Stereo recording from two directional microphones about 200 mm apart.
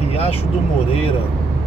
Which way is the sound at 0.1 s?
30° left (ahead or behind).